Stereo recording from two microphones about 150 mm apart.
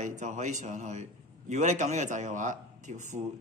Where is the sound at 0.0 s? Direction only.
55° right (ahead or behind).